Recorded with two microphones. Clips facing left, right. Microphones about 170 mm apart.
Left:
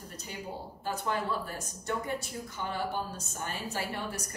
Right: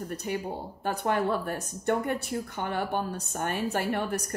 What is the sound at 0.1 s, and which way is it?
A woman's voice, 60° right (ahead or behind).